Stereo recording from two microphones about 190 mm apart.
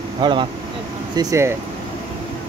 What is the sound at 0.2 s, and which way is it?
Speech, 25° right (ahead or behind).